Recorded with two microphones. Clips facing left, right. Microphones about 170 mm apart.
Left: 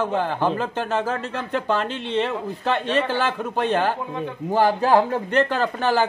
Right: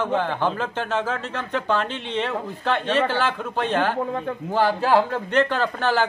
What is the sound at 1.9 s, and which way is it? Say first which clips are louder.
Speech: left 2 dB; 40° left (ahead or behind).